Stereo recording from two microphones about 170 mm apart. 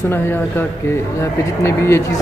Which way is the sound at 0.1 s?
15° left (ahead or behind).